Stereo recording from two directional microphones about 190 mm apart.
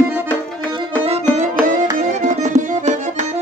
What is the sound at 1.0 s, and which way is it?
Music, 30° right (ahead or behind).